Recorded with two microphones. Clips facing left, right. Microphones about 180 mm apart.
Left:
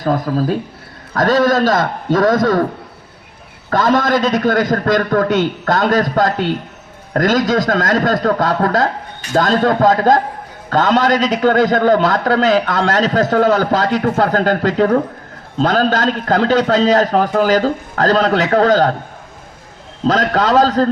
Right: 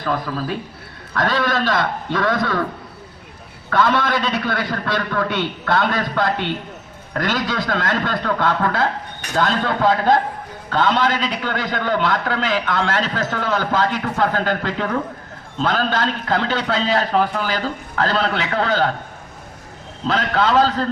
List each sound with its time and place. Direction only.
0.0 s a man's voice: 40° left (ahead or behind)
3.7 s a man's voice: 40° left (ahead or behind)
20.1 s a man's voice: 40° left (ahead or behind)